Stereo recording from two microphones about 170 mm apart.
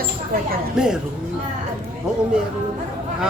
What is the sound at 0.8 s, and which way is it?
Speech, 5° right (ahead or behind).